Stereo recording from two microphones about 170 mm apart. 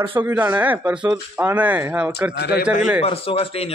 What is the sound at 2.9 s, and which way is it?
Speech, 35° left (ahead or behind).